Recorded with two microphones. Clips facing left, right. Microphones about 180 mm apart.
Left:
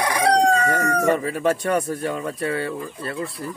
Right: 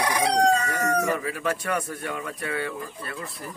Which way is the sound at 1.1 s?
30° left (ahead or behind).